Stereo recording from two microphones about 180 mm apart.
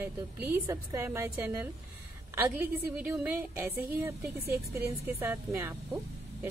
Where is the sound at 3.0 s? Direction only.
10° right (ahead or behind).